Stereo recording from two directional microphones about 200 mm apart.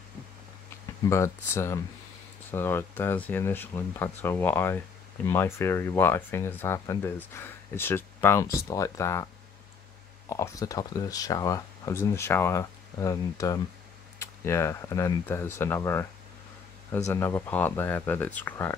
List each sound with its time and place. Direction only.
1.0 s speech: 15° left (ahead or behind)
17.1 s speech: 10° left (ahead or behind)